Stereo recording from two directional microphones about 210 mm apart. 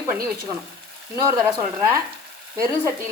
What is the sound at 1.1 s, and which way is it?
Speech, 15° right (ahead or behind).